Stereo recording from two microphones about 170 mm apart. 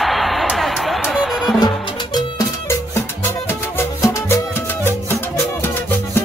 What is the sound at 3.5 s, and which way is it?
Music, 15° left (ahead or behind).